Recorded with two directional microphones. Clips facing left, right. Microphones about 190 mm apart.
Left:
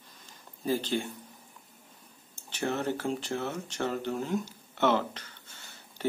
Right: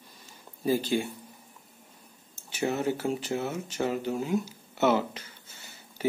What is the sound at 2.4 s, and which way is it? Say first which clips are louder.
Speech: right 2 dB; 5° right (ahead or behind).